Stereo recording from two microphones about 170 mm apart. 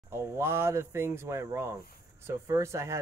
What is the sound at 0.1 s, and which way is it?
Speech, 15° right (ahead or behind).